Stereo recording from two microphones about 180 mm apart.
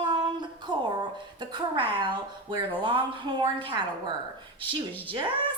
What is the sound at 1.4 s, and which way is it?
A woman's voice, 25° right (ahead or behind).